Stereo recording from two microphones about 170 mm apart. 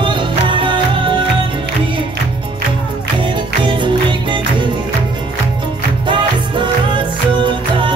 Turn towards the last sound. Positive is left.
turn(degrees=-30)  # may be behind; listen again after turning